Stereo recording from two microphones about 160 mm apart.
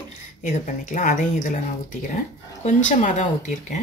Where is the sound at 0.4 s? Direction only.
55° left (ahead or behind).